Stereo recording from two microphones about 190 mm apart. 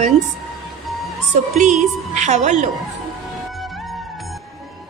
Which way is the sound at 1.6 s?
40° right (ahead or behind).